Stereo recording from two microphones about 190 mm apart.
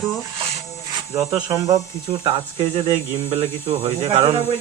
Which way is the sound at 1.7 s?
30° right (ahead or behind).